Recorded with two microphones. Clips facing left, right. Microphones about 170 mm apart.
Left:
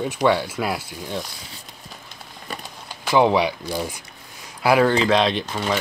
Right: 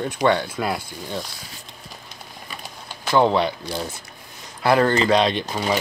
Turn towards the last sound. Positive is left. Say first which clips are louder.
# right 1 dB
turn(degrees=-5)  # may be behind; listen again after turning